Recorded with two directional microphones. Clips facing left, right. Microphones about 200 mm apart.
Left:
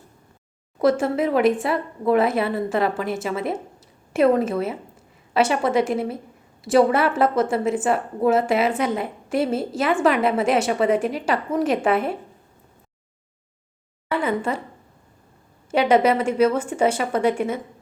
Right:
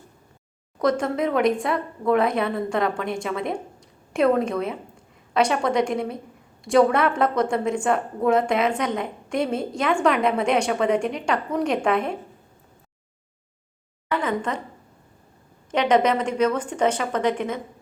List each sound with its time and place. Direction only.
0.8 s a woman's voice: 5° left (ahead or behind)
14.1 s a woman's voice: 10° left (ahead or behind)
15.7 s a woman's voice: 10° left (ahead or behind)